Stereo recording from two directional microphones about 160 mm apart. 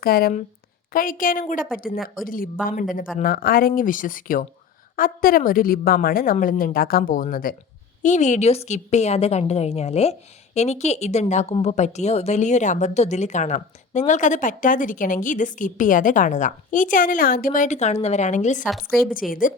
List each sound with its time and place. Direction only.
0.0 s a woman's voice: 70° left (ahead or behind)
8.0 s a woman's voice: 50° left (ahead or behind)
18.7 s a woman's voice: centre (ahead or behind)
19.3 s a woman's voice: 60° left (ahead or behind)